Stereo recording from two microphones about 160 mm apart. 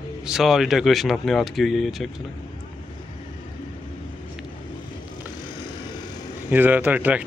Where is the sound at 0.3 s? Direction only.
Centre (ahead or behind).